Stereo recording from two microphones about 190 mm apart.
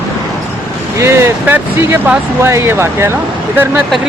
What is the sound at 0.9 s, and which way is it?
Speech, 15° right (ahead or behind).